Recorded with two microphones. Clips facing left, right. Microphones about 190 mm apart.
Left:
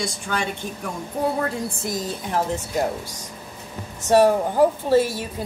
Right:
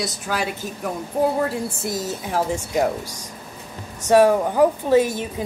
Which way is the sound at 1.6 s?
25° right (ahead or behind).